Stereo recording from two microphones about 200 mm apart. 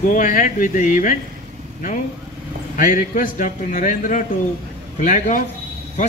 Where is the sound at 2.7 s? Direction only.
40° left (ahead or behind).